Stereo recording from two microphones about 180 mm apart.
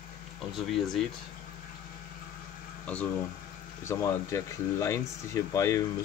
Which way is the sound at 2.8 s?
5° left (ahead or behind).